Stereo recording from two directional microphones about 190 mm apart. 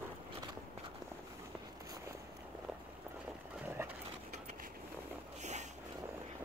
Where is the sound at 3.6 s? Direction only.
10° right (ahead or behind).